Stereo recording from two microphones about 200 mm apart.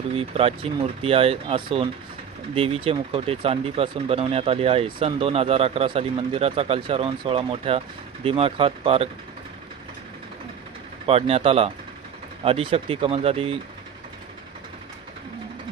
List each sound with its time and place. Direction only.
0.1 s speech: 30° right (ahead or behind)
11.1 s speech: 30° right (ahead or behind)